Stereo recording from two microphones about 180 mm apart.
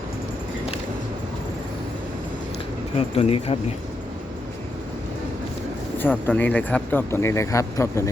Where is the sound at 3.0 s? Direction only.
35° left (ahead or behind).